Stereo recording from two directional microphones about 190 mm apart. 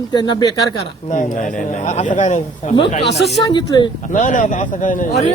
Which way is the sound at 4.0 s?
40° left (ahead or behind).